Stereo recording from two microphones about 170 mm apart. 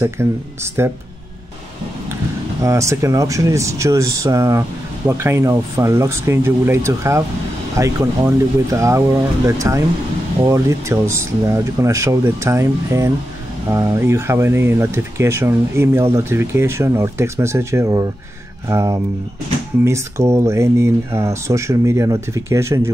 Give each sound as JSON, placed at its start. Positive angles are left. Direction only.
{"t": 0.0, "sound": "speech", "side_deg": -15}
{"t": 2.6, "sound": "speech", "side_deg": -15}